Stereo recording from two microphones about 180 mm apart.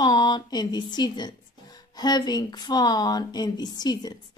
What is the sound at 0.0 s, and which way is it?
A woman's voice, 25° left (ahead or behind).